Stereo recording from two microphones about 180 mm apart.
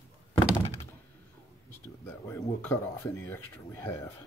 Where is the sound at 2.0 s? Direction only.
15° left (ahead or behind).